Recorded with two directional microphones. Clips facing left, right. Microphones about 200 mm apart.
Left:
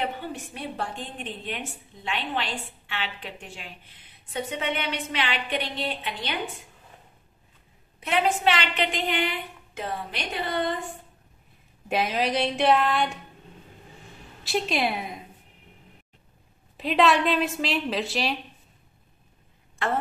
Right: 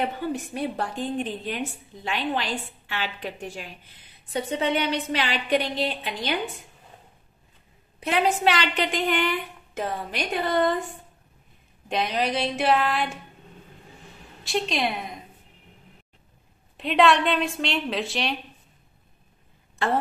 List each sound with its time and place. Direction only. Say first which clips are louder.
0.7 s a woman's voice: right 6 dB; 40° right (ahead or behind)
8.0 s a woman's voice: right 1 dB; 40° right (ahead or behind)
11.9 s a woman's voice: even; 5° left (ahead or behind)
14.4 s a woman's voice: even; 5° left (ahead or behind)
16.7 s a woman's voice: right 1 dB; centre (ahead or behind)